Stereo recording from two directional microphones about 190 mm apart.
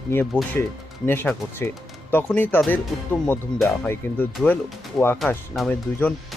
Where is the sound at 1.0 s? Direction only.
10° left (ahead or behind).